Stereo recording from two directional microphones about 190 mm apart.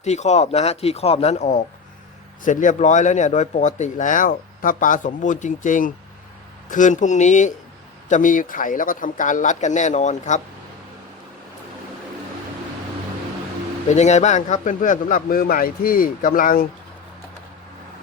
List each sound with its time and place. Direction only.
0.0 s speech: 35° left (ahead or behind)
13.9 s speech: 35° left (ahead or behind)